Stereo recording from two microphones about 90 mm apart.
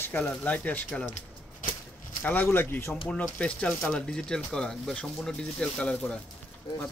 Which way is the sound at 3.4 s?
15° left (ahead or behind).